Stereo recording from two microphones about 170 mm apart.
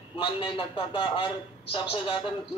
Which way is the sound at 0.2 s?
30° left (ahead or behind).